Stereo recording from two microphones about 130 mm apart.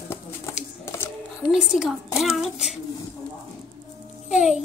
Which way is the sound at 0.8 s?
20° left (ahead or behind).